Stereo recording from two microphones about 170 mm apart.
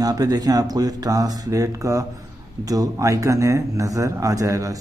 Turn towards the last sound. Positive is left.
turn(degrees=-20)  # may be behind; listen again after turning